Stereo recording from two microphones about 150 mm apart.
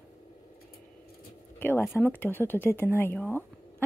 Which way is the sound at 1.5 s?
15° left (ahead or behind).